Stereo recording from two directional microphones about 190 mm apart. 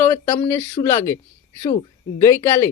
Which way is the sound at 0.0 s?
10° left (ahead or behind).